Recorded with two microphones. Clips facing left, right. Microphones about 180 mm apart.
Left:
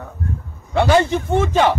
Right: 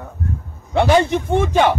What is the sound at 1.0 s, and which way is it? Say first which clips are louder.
Speech: even; 15° right (ahead or behind).